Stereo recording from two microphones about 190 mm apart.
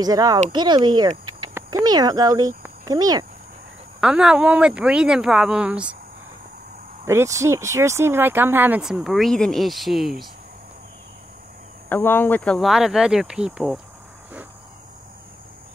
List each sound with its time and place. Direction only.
0.0 s speech: 20° right (ahead or behind)
4.0 s speech: 5° right (ahead or behind)
7.1 s speech: 15° right (ahead or behind)
11.9 s speech: 10° left (ahead or behind)